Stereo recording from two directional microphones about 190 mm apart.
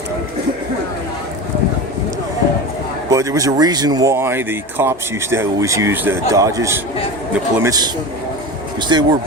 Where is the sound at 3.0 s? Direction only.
20° right (ahead or behind).